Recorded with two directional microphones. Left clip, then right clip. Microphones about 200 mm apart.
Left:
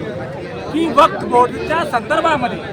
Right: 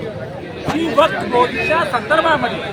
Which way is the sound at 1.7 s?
20° left (ahead or behind).